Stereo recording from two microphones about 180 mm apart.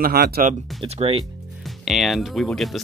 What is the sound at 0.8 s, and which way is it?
Speech, 35° right (ahead or behind).